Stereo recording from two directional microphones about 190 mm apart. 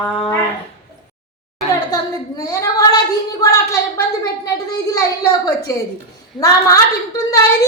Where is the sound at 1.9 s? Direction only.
20° left (ahead or behind).